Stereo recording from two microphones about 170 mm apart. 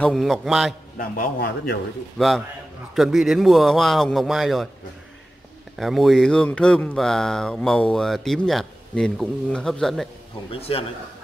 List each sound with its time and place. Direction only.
0.0 s speech: centre (ahead or behind)
0.9 s a man's voice: 55° left (ahead or behind)
2.1 s speech: centre (ahead or behind)
5.8 s speech: centre (ahead or behind)
10.5 s a man's voice: 35° left (ahead or behind)